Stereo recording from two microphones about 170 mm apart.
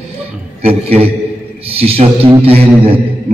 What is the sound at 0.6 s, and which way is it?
A man's voice, 35° right (ahead or behind).